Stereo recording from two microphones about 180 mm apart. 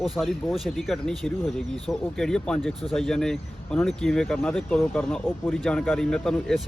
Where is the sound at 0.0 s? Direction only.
Centre (ahead or behind).